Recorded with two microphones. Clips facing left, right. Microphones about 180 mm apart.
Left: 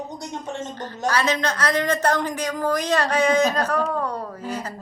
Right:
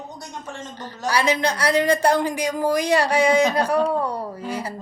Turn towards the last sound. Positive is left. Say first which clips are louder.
# right 2 dB
turn(degrees=-10)  # may be behind; listen again after turning